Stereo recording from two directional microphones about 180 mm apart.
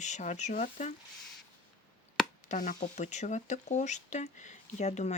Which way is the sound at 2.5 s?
45° left (ahead or behind).